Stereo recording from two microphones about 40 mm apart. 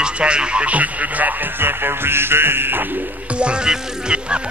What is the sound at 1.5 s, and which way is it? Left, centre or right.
Music, right.